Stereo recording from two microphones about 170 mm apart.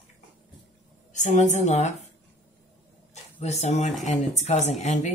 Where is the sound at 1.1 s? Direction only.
45° left (ahead or behind).